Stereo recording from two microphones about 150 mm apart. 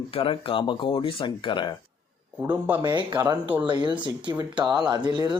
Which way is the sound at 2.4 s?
15° right (ahead or behind).